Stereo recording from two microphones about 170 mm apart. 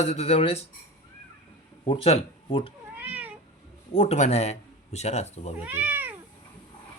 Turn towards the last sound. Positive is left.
turn(degrees=-10)  # may be behind; listen again after turning